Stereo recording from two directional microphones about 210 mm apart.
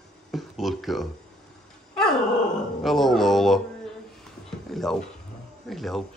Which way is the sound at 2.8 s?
Centre (ahead or behind).